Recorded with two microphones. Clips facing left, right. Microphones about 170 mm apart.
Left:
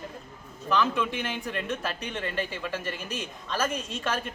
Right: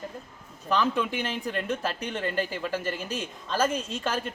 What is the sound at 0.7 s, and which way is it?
A man's voice, 35° right (ahead or behind).